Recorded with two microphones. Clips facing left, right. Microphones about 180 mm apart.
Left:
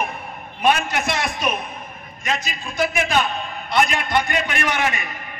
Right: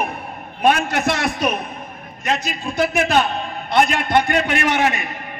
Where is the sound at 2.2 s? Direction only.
60° right (ahead or behind).